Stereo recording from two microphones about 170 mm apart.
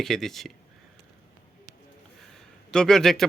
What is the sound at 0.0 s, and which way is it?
Speech, centre (ahead or behind).